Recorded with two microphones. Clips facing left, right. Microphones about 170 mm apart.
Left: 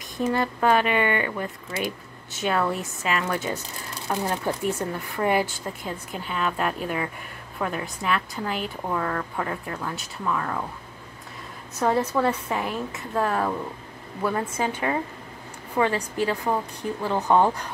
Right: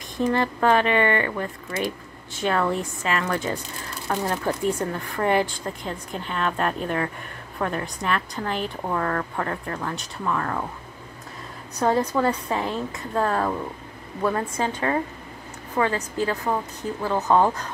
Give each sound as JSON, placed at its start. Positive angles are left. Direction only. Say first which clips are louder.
{"t": 0.2, "sound": "a woman's voice", "louder": "right 2 dB", "side_deg": 5}
{"t": 11.8, "sound": "a woman's voice", "louder": "right 1 dB", "side_deg": 5}
{"t": 12.4, "sound": "a woman's voice", "louder": "right 2 dB", "side_deg": -25}
{"t": 13.1, "sound": "a woman's voice", "louder": "right 1 dB", "side_deg": 5}